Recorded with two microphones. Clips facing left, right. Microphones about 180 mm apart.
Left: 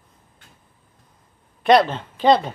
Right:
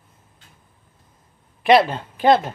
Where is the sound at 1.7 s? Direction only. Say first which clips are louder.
Even; 5° right (ahead or behind).